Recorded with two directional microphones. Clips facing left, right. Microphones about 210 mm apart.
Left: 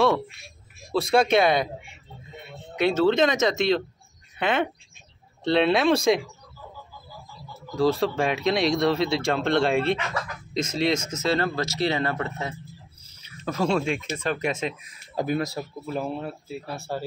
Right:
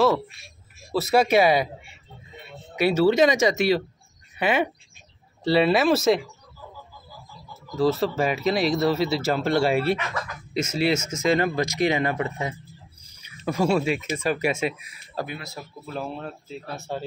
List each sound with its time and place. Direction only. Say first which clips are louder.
0.9 s speech: right 1 dB; 5° right (ahead or behind)
2.7 s speech: right 1 dB; 10° right (ahead or behind)
7.7 s speech: even; centre (ahead or behind)
15.2 s speech: left 10 dB; 40° left (ahead or behind)
15.9 s speech: left 2 dB; 10° left (ahead or behind)